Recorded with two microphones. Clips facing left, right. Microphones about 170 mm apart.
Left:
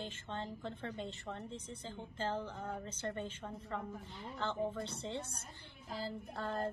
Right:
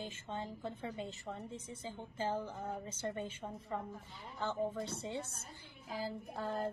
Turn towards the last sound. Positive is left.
turn(degrees=-10)  # may be behind; listen again after turning